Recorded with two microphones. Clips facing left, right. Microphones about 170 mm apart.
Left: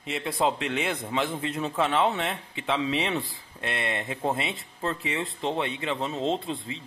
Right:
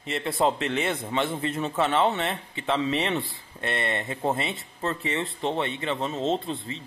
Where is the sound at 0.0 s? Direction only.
Centre (ahead or behind).